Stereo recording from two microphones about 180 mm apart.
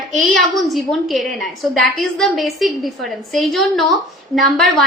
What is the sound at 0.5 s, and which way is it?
A woman's voice, centre (ahead or behind).